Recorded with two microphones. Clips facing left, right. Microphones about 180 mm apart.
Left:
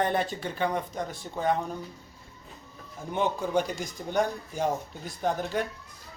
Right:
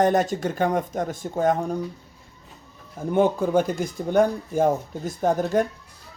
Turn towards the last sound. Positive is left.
turn(degrees=-45)  # may be behind; listen again after turning